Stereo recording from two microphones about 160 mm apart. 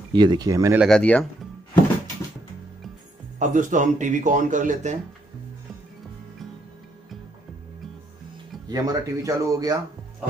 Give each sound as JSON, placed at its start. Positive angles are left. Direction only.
{"t": 0.1, "sound": "speech", "side_deg": -30}
{"t": 0.7, "sound": "speech", "side_deg": 5}
{"t": 3.3, "sound": "speech", "side_deg": -50}
{"t": 8.6, "sound": "speech", "side_deg": -25}